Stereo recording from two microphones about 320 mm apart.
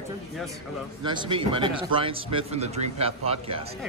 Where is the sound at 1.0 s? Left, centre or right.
Centre.